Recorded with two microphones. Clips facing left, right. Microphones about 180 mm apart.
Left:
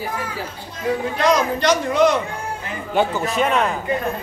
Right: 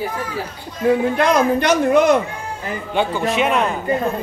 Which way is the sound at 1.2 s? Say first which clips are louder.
Right 3 dB; 55° right (ahead or behind).